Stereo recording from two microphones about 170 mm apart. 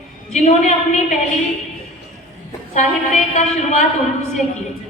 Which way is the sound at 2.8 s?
45° left (ahead or behind).